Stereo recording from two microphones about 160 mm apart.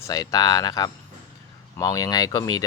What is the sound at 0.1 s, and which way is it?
Speech, 25° left (ahead or behind).